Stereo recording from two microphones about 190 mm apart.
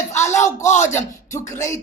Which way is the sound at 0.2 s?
15° left (ahead or behind).